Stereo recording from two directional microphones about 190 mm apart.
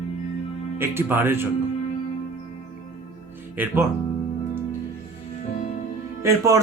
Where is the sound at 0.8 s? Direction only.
10° right (ahead or behind).